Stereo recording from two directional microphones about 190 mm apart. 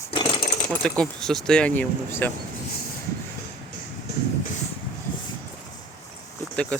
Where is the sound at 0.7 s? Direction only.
5° left (ahead or behind).